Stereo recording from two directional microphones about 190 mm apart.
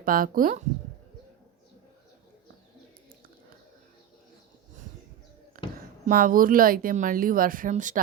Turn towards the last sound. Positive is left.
turn(degrees=-40)  # may be behind; listen again after turning